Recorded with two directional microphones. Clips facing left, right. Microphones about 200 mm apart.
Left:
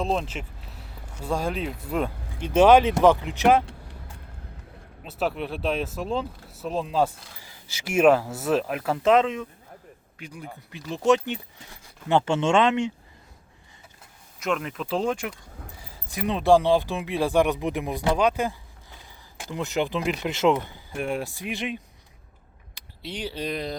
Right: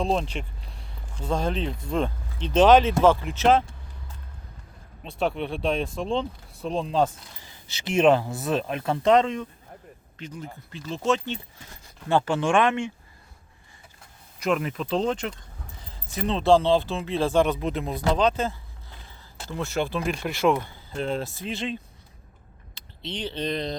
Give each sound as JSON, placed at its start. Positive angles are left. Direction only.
{"t": 0.0, "sound": "speech", "side_deg": 5}
{"t": 5.0, "sound": "speech", "side_deg": 5}
{"t": 14.3, "sound": "speech", "side_deg": 0}